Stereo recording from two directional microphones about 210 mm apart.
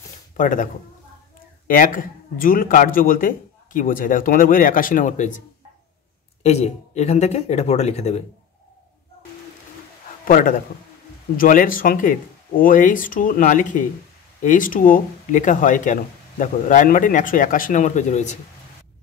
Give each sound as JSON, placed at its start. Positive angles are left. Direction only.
{"t": 0.4, "sound": "speech", "side_deg": 40}
{"t": 1.7, "sound": "speech", "side_deg": 40}
{"t": 6.4, "sound": "speech", "side_deg": 30}
{"t": 10.2, "sound": "a man's voice", "side_deg": 40}